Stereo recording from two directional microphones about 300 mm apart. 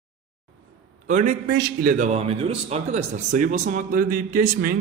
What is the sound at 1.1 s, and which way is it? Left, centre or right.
A man's voice, right.